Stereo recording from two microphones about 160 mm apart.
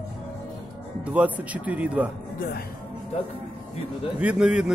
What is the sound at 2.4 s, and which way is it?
Speech, 75° left (ahead or behind).